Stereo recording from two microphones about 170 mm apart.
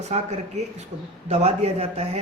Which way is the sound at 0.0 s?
40° right (ahead or behind).